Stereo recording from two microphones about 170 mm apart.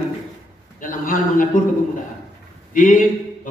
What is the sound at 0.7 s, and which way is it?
Speech, 50° left (ahead or behind).